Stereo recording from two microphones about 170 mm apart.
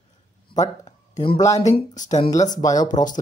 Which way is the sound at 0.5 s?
25° left (ahead or behind).